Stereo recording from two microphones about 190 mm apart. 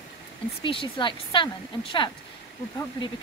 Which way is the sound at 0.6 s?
25° left (ahead or behind).